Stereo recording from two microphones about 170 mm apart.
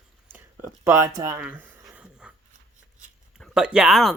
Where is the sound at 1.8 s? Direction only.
5° right (ahead or behind).